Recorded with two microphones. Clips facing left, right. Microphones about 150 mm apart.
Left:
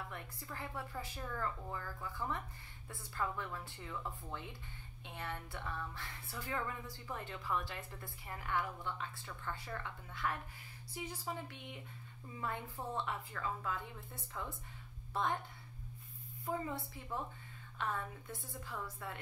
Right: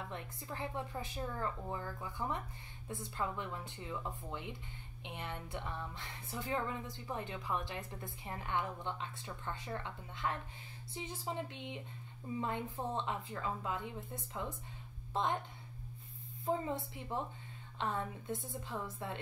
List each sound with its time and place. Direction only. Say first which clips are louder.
0.1 s speech: right 3 dB; 20° right (ahead or behind)
16.4 s speech: right 4 dB; 20° right (ahead or behind)